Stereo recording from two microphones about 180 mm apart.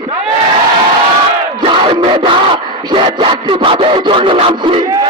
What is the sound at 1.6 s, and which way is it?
Battle cry, 25° right (ahead or behind).